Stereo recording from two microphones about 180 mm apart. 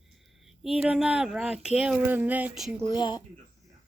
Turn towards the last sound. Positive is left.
turn(degrees=25)  # may be behind; listen again after turning